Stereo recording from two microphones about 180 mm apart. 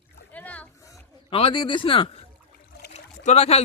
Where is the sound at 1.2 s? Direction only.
30° left (ahead or behind).